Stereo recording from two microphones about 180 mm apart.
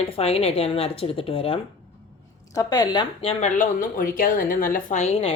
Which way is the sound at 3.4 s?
45° left (ahead or behind).